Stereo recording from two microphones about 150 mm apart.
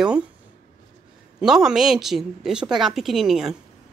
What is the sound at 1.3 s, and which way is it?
Speech, 5° right (ahead or behind).